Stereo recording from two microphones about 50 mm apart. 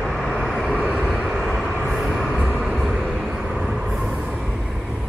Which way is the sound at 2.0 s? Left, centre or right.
Centre.